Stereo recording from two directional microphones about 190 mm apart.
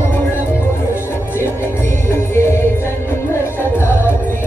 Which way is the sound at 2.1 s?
15° left (ahead or behind).